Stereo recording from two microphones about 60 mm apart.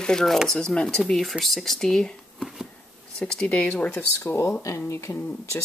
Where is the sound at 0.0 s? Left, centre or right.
Centre.